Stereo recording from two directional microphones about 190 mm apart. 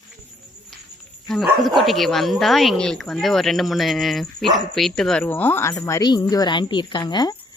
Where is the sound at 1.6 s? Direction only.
Centre (ahead or behind); by 7.3 s 20° left (ahead or behind).